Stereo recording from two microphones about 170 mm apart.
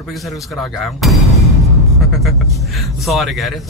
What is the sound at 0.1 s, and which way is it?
A man's voice, centre (ahead or behind).